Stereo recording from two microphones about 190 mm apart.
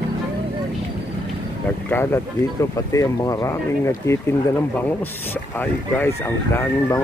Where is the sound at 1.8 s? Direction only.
10° left (ahead or behind).